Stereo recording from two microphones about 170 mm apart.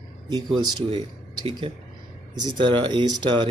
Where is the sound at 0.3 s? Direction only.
30° right (ahead or behind).